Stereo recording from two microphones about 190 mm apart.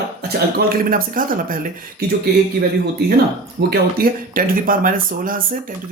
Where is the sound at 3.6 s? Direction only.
55° right (ahead or behind).